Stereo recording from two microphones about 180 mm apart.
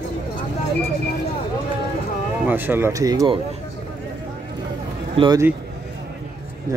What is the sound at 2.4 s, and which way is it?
Speech, 10° right (ahead or behind).